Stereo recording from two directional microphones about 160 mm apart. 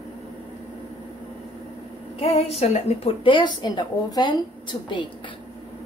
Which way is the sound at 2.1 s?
40° left (ahead or behind).